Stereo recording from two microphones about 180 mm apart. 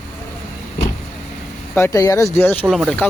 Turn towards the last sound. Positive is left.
turn(degrees=0)  # may be behind; listen again after turning